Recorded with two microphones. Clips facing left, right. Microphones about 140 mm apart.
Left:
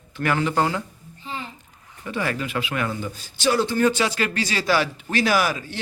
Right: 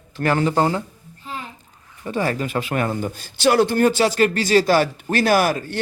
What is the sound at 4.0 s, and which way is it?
Speech, 45° right (ahead or behind).